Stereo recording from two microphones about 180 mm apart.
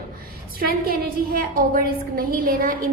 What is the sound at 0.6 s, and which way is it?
A woman's voice, 55° right (ahead or behind).